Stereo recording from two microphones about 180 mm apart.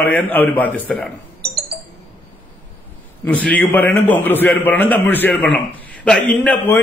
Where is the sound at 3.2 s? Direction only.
10° left (ahead or behind).